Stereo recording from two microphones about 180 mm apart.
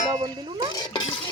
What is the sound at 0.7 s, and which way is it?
Speech, 25° left (ahead or behind).